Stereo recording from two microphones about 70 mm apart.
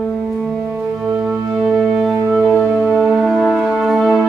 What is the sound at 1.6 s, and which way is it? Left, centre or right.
Music, centre.